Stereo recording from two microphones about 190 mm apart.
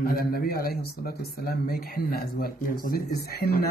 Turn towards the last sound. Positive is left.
turn(degrees=55)  # may be behind; listen again after turning